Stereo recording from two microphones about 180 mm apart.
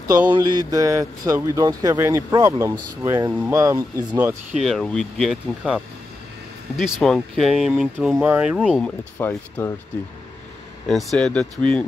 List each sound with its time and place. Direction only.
0.2 s speech: 15° right (ahead or behind)
6.8 s speech: centre (ahead or behind)
8.8 s speech: 10° left (ahead or behind)
10.9 s speech: centre (ahead or behind)